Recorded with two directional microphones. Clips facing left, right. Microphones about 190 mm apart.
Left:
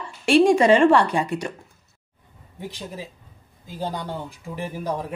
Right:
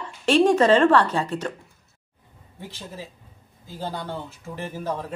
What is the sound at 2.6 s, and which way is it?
A man's voice, 15° left (ahead or behind).